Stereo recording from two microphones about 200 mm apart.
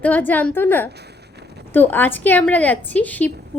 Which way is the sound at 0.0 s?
10° left (ahead or behind).